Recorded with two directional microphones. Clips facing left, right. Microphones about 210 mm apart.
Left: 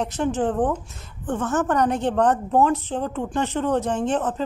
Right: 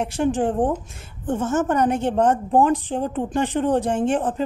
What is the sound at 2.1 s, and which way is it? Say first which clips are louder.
Speech: right 1 dB; 25° right (ahead or behind).